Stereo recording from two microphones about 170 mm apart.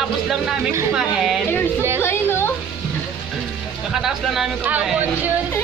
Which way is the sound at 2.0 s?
15° left (ahead or behind).